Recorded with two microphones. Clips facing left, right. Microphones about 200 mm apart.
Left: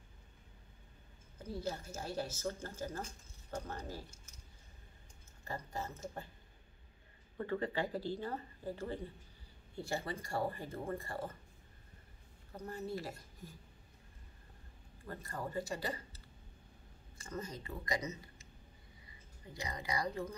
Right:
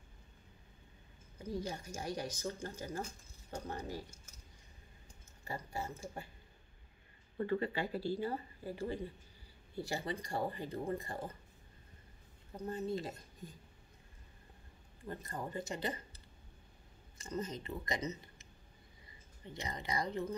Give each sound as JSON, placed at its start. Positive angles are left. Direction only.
{"t": 1.4, "sound": "speech", "side_deg": -15}
{"t": 5.4, "sound": "speech", "side_deg": -15}
{"t": 8.1, "sound": "speech", "side_deg": -10}
{"t": 12.5, "sound": "speech", "side_deg": -20}
{"t": 15.0, "sound": "speech", "side_deg": -20}
{"t": 17.2, "sound": "speech", "side_deg": -20}